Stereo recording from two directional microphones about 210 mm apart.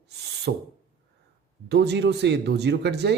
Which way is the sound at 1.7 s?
55° right (ahead or behind).